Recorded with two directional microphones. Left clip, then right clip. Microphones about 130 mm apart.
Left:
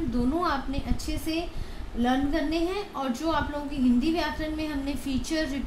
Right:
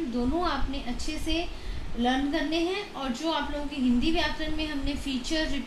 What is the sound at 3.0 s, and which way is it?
A woman's voice, 40° left (ahead or behind).